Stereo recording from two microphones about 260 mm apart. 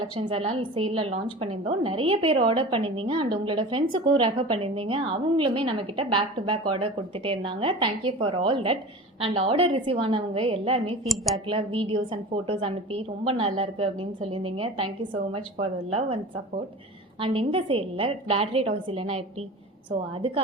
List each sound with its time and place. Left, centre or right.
0.2 s a woman's voice: right
11.0 s speech: centre
11.4 s a woman's voice: centre
17.2 s a woman's voice: right